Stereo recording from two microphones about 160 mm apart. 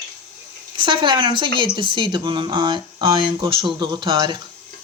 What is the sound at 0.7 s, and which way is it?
A woman's voice, 30° right (ahead or behind).